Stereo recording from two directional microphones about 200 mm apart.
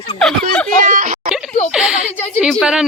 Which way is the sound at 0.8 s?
40° right (ahead or behind).